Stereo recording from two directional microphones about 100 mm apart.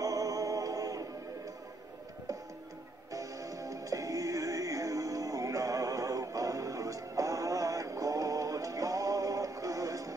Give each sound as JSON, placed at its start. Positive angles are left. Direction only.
{"t": 0.0, "sound": "music", "side_deg": -35}
{"t": 3.1, "sound": "music", "side_deg": -35}